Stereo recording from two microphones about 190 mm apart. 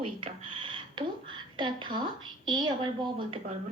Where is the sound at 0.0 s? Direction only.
30° right (ahead or behind).